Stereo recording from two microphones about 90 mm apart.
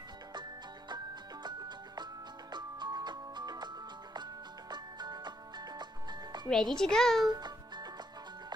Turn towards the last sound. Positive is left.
turn(degrees=-55)  # may be behind; listen again after turning